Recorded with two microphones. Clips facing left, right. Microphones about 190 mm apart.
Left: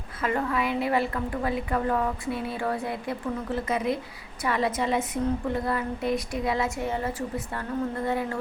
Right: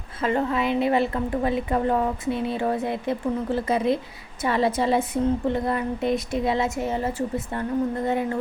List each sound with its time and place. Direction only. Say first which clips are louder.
0.2 s a woman's voice: right 3 dB; 25° right (ahead or behind)